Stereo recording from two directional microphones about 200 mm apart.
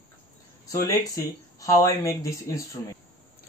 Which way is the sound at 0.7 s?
15° left (ahead or behind).